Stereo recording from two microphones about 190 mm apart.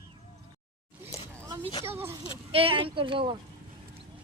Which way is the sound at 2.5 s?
30° right (ahead or behind).